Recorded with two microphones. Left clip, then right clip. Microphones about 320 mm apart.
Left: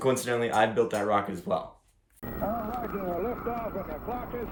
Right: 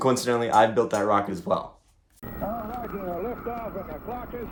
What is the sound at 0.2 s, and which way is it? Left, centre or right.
Speech, centre.